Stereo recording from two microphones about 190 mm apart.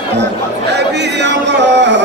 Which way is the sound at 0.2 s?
65° right (ahead or behind).